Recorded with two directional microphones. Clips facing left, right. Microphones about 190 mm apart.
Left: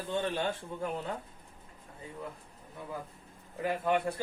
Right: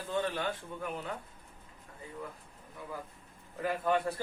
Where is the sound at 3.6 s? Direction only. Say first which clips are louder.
Left 1 dB; 20° left (ahead or behind).